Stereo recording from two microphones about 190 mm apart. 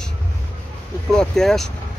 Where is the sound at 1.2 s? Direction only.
Centre (ahead or behind).